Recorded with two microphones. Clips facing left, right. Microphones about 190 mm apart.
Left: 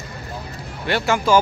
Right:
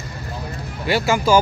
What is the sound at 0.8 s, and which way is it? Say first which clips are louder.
Speech: right 1 dB; 5° right (ahead or behind).